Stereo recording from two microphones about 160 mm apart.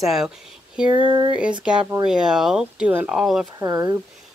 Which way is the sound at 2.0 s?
5° right (ahead or behind).